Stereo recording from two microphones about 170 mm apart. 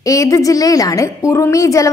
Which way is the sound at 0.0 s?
20° left (ahead or behind).